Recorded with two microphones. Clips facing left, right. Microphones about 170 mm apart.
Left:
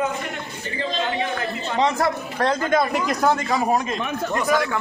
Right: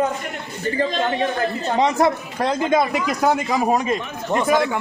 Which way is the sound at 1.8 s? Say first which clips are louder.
Right 3 dB; 15° right (ahead or behind).